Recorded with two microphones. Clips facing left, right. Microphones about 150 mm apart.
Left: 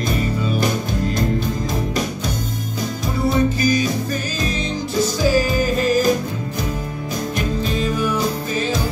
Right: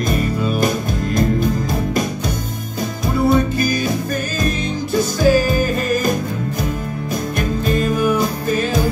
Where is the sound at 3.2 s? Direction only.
55° right (ahead or behind).